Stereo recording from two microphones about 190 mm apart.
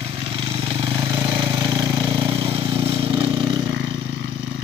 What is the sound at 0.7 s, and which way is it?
Vehicle, 25° right (ahead or behind).